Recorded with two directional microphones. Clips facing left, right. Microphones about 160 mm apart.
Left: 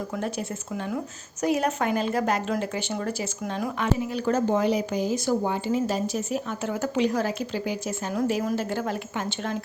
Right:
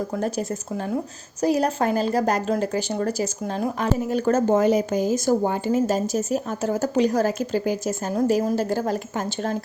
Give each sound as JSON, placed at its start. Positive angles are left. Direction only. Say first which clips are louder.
{"t": 0.1, "sound": "speech", "louder": "right 5 dB", "side_deg": -40}